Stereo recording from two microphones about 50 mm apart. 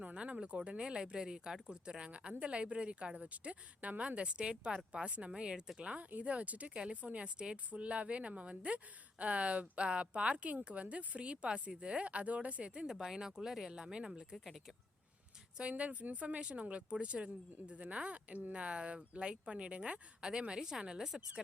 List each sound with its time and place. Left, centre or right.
0.0 s a woman's voice: right
15.8 s a woman's voice: right; by 21.4 s centre